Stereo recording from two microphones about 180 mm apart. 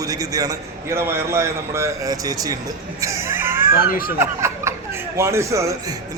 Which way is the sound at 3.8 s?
55° left (ahead or behind).